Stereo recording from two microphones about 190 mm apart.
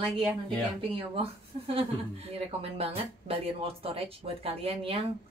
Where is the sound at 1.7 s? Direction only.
30° right (ahead or behind).